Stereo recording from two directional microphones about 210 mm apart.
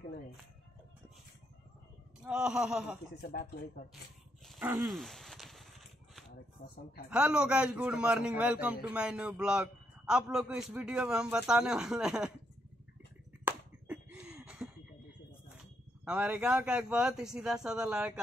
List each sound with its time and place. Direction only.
2.2 s a man's voice: 5° right (ahead or behind)
3.2 s speech: 45° left (ahead or behind)
4.5 s a sound: 10° right (ahead or behind)
7.1 s a man's voice: 5° right (ahead or behind)
13.5 s a sound: 5° right (ahead or behind)
16.1 s a man's voice: 5° right (ahead or behind)